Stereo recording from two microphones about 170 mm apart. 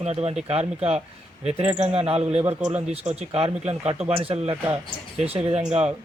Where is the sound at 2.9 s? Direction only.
35° right (ahead or behind).